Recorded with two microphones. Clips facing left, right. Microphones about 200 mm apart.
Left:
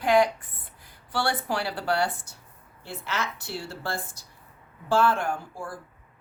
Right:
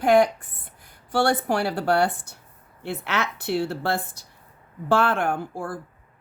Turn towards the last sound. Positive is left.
turn(degrees=-60)  # may be behind; listen again after turning